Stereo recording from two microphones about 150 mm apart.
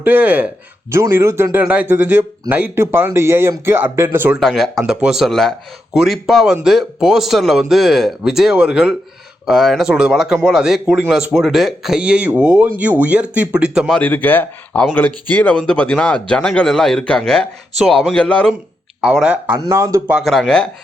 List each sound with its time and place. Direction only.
0.0 s speech: 10° right (ahead or behind)
4.4 s speech: centre (ahead or behind)
14.0 s speech: 10° left (ahead or behind)
19.0 s speech: 5° right (ahead or behind)
20.1 s speech: centre (ahead or behind)